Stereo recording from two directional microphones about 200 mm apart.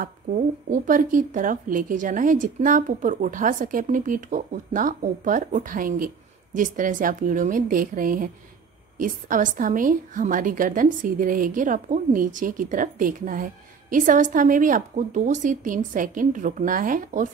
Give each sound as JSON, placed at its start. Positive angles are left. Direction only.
{"t": 0.0, "sound": "a woman's voice", "side_deg": -40}